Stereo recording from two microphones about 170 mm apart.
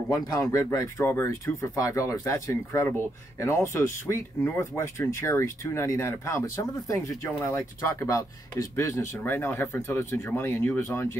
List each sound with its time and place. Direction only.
0.1 s speech: 20° left (ahead or behind)